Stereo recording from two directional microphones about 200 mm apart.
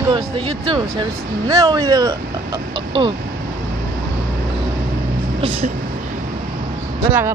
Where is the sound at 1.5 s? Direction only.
15° right (ahead or behind).